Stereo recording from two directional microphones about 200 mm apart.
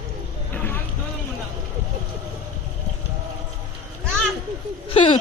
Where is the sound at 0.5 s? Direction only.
10° left (ahead or behind).